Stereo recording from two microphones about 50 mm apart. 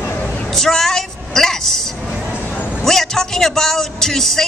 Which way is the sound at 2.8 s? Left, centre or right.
Centre.